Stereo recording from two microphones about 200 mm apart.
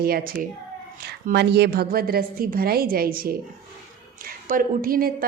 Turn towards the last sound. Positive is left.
turn(degrees=-45)  # may be behind; listen again after turning